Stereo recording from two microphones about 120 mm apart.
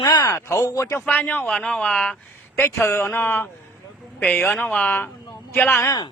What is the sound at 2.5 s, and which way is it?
A man's voice, 20° left (ahead or behind).